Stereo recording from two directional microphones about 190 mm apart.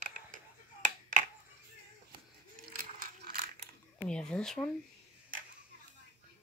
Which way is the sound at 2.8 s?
50° right (ahead or behind).